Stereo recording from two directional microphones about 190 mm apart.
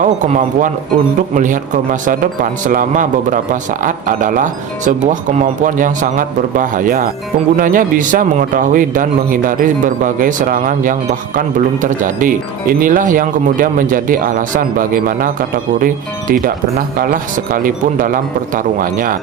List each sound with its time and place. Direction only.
0.0 s speech: 45° right (ahead or behind)